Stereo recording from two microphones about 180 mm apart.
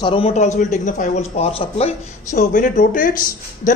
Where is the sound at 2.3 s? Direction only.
45° left (ahead or behind).